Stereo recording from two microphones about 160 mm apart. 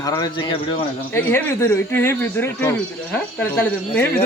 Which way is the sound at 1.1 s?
15° left (ahead or behind).